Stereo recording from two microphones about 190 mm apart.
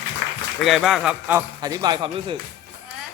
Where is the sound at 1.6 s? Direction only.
20° right (ahead or behind).